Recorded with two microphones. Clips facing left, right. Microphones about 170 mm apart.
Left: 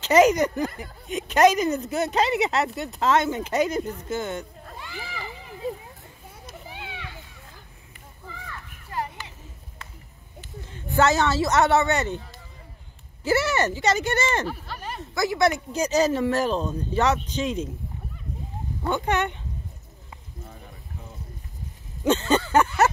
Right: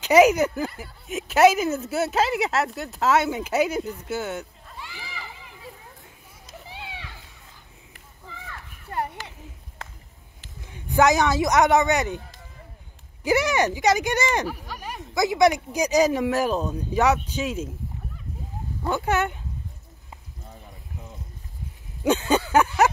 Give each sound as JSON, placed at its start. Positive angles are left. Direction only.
{"t": 0.0, "sound": "speech", "side_deg": -10}
{"t": 4.6, "sound": "a sound", "side_deg": 50}
{"t": 8.9, "sound": "a sound", "side_deg": -60}
{"t": 10.6, "sound": "a man's voice", "side_deg": -15}
{"t": 13.2, "sound": "speech", "side_deg": -15}
{"t": 18.9, "sound": "speech", "side_deg": -5}
{"t": 22.0, "sound": "speech", "side_deg": -10}